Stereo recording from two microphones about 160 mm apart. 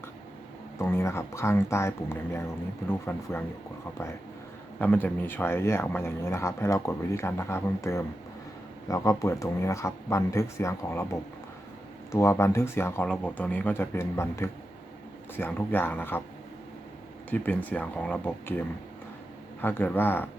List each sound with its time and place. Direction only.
0.8 s speech: 15° left (ahead or behind)
4.8 s speech: 10° left (ahead or behind)
17.2 s speech: 10° left (ahead or behind)
19.6 s speech: 10° left (ahead or behind)